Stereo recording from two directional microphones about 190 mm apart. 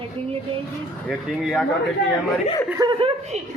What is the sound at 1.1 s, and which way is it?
Speech, 5° left (ahead or behind).